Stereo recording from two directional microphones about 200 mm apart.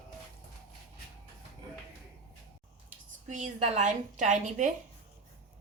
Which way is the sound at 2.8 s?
40° right (ahead or behind).